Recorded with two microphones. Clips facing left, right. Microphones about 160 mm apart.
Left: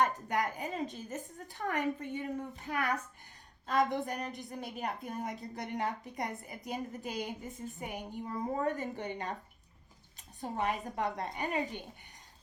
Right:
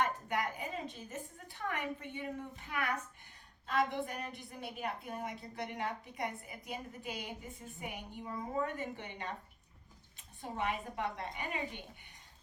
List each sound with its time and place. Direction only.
0.0 s a woman's voice: 40° left (ahead or behind)